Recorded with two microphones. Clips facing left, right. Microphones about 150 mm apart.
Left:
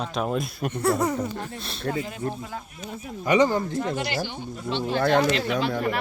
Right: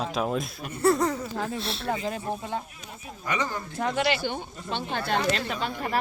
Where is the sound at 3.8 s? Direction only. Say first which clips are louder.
Right 1 dB; 70° right (ahead or behind).